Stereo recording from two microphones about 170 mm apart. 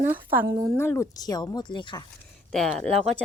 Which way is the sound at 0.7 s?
15° left (ahead or behind).